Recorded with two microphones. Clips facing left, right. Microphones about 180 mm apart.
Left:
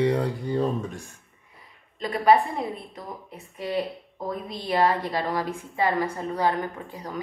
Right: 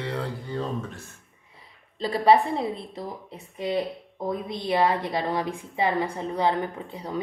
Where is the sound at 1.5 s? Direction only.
30° right (ahead or behind).